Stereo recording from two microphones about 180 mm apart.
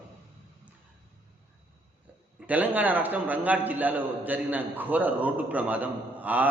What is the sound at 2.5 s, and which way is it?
A man's voice, 10° right (ahead or behind).